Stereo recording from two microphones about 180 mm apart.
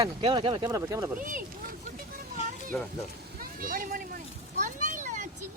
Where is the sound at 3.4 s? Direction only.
50° right (ahead or behind).